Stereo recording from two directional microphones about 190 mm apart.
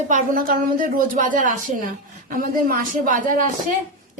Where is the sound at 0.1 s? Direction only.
45° right (ahead or behind).